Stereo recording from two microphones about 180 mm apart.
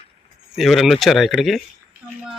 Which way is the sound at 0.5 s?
Centre (ahead or behind).